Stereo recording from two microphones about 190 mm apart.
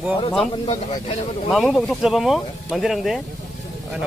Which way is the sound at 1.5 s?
Centre (ahead or behind).